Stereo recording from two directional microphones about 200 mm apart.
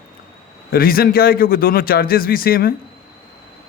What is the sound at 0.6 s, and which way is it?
A man's voice, 50° left (ahead or behind).